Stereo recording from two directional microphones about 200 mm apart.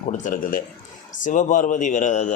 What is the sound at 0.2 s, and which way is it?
A man's voice, 40° left (ahead or behind).